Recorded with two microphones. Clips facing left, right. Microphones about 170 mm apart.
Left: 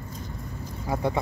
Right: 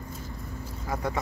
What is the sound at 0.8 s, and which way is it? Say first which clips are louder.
Speech: left 4 dB; 25° left (ahead or behind).